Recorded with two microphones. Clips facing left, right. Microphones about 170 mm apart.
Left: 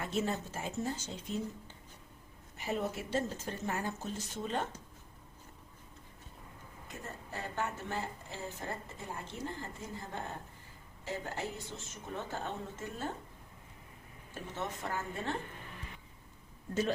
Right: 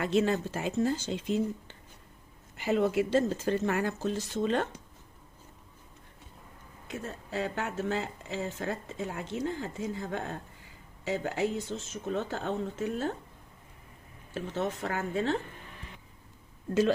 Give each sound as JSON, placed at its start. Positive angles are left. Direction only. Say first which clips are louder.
{"t": 0.0, "sound": "speech", "louder": "right 8 dB", "side_deg": -90}
{"t": 6.8, "sound": "speech", "louder": "right 8 dB", "side_deg": -90}
{"t": 14.3, "sound": "a woman's voice", "louder": "right 8 dB", "side_deg": -80}